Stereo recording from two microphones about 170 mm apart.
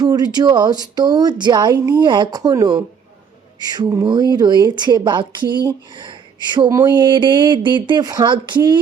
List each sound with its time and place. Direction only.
0.0 s speech: 25° right (ahead or behind)